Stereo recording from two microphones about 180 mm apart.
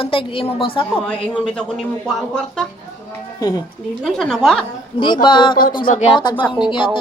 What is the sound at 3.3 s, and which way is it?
Speech, 20° left (ahead or behind).